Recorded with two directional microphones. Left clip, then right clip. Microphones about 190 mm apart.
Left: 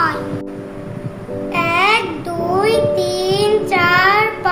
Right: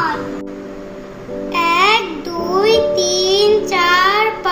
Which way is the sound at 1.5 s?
10° left (ahead or behind).